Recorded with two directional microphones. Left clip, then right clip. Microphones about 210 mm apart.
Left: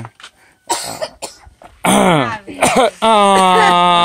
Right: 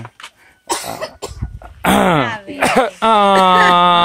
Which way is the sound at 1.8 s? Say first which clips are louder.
Left 1 dB; centre (ahead or behind).